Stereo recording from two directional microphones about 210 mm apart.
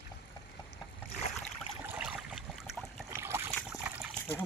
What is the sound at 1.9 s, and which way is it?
Boat, 5° right (ahead or behind).